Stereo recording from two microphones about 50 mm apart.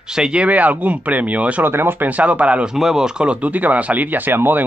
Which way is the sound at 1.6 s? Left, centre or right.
Right.